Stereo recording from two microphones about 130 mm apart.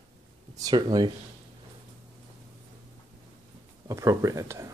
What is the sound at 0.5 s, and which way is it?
Speech, 30° right (ahead or behind).